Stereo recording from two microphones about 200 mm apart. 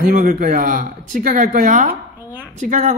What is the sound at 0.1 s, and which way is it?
Speech, 40° right (ahead or behind).